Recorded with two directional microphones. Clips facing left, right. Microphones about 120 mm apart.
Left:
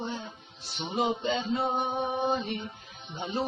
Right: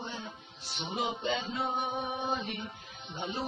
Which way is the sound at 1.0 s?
35° left (ahead or behind).